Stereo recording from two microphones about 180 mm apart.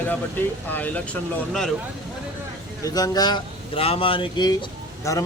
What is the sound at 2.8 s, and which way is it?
Speech, 20° left (ahead or behind).